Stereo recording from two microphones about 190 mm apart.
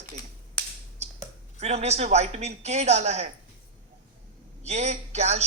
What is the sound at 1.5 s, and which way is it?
Speech, 35° right (ahead or behind).